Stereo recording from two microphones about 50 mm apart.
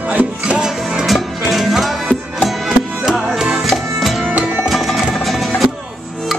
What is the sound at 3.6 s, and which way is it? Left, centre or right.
Music, centre.